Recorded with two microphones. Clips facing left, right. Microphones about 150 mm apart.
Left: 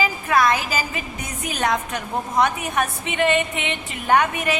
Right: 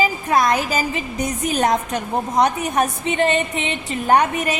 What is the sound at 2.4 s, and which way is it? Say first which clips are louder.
A woman's voice: right 3 dB; 35° right (ahead or behind).